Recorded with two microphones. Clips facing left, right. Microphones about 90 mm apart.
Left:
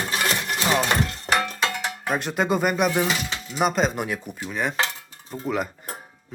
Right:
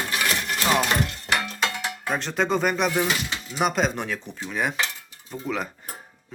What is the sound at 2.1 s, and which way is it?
Speech, 5° left (ahead or behind).